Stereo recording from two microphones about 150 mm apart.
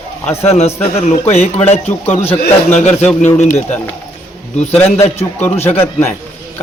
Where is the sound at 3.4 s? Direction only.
50° left (ahead or behind).